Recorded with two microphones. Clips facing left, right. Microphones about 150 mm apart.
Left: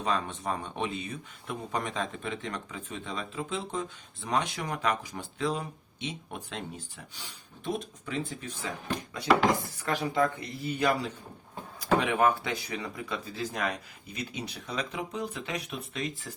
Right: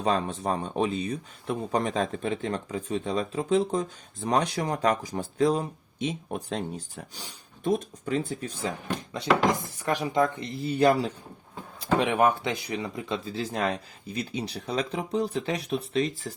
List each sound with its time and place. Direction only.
0.0 s speech: 35° right (ahead or behind)
9.6 s speech: 20° right (ahead or behind)
11.8 s speech: 20° right (ahead or behind)